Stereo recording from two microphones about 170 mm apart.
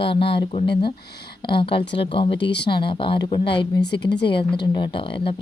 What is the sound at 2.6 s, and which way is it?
Speech, 30° left (ahead or behind).